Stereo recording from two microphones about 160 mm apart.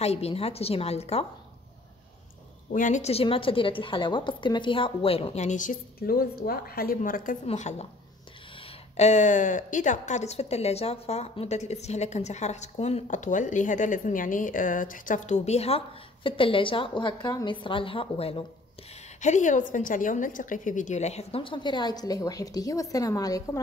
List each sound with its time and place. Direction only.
0.0 s a woman's voice: 40° left (ahead or behind)
2.7 s a woman's voice: 50° left (ahead or behind)
7.4 s a woman's voice: 45° left (ahead or behind)
8.9 s a woman's voice: 45° left (ahead or behind)
19.2 s a woman's voice: 50° left (ahead or behind); by 23.6 s 20° left (ahead or behind)